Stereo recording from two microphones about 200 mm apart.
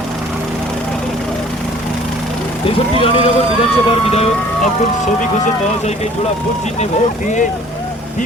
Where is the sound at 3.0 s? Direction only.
25° left (ahead or behind).